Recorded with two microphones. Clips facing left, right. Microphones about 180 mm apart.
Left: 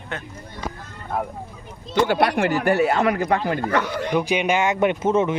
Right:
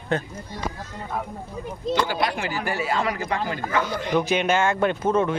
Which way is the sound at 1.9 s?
55° left (ahead or behind).